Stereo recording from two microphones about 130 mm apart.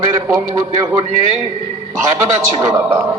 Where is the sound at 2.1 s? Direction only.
20° right (ahead or behind).